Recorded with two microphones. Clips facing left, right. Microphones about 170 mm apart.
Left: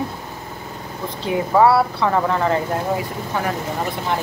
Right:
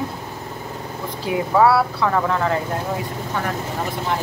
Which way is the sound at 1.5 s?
Centre (ahead or behind).